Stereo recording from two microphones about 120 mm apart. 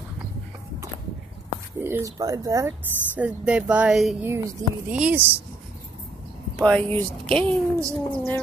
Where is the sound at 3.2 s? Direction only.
10° right (ahead or behind).